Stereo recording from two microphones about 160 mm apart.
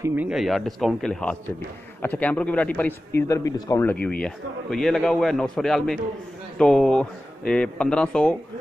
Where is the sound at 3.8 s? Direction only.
10° left (ahead or behind).